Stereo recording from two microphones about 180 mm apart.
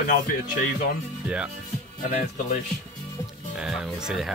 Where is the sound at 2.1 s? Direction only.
40° left (ahead or behind).